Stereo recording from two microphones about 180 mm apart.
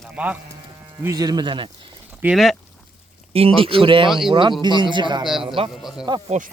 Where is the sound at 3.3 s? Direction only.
30° right (ahead or behind).